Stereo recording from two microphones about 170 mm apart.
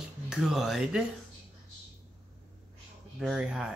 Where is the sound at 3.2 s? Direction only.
5° right (ahead or behind).